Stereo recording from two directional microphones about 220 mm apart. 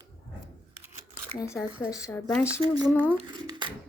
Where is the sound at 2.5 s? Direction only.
20° right (ahead or behind).